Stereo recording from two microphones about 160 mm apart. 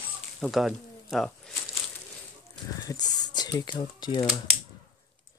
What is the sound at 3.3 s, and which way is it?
Speech, 25° left (ahead or behind).